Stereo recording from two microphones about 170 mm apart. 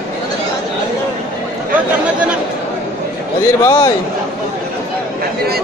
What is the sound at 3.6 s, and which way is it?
Speech, 20° left (ahead or behind).